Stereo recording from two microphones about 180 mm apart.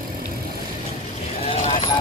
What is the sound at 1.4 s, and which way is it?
Vehicle, 40° left (ahead or behind).